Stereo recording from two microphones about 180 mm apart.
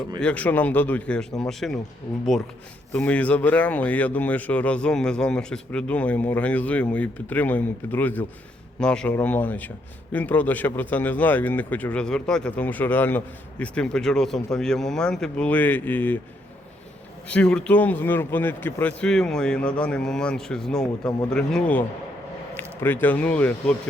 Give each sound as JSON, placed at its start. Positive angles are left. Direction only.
{"t": 0.2, "sound": "a man's voice", "side_deg": 10}
{"t": 2.9, "sound": "speech", "side_deg": 10}
{"t": 17.2, "sound": "a man's voice", "side_deg": 5}